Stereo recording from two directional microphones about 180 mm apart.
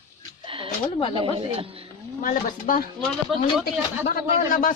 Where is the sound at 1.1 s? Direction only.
30° right (ahead or behind).